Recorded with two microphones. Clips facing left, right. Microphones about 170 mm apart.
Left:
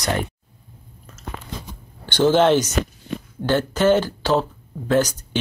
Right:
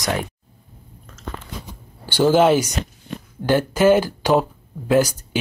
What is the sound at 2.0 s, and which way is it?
Speech, 5° right (ahead or behind).